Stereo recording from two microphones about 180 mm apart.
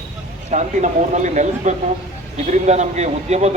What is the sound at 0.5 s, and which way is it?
A man's voice, 40° right (ahead or behind).